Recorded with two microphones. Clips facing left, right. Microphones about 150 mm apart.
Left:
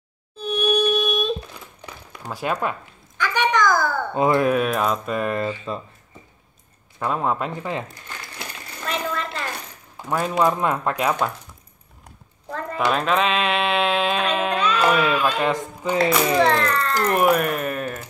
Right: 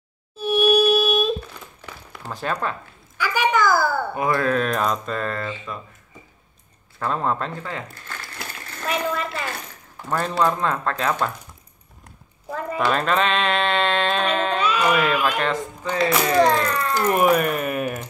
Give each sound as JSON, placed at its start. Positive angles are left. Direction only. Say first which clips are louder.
{"t": 0.4, "sound": "a sound", "louder": "right 3 dB", "side_deg": -5}
{"t": 1.8, "sound": "a sound", "louder": "even", "side_deg": 10}
{"t": 3.2, "sound": "babbling", "louder": "even", "side_deg": -10}
{"t": 4.1, "sound": "speech", "louder": "left 3 dB", "side_deg": 20}
{"t": 7.0, "sound": "crumpling", "louder": "left 1 dB", "side_deg": 10}
{"t": 8.8, "sound": "a sound", "louder": "right 2 dB", "side_deg": -5}
{"t": 9.9, "sound": "speech", "louder": "left 1 dB", "side_deg": 10}
{"t": 12.4, "sound": "speech", "louder": "even", "side_deg": -5}
{"t": 14.6, "sound": "music", "louder": "left 2 dB", "side_deg": -10}
{"t": 15.3, "sound": "speech", "louder": "left 1 dB", "side_deg": 10}
{"t": 16.4, "sound": "speech", "louder": "even", "side_deg": -10}